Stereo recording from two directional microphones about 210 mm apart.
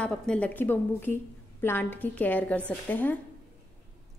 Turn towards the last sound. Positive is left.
turn(degrees=10)  # may be behind; listen again after turning